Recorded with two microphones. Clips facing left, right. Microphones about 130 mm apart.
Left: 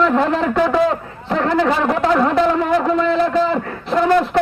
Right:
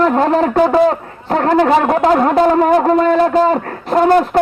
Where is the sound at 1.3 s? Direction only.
45° right (ahead or behind).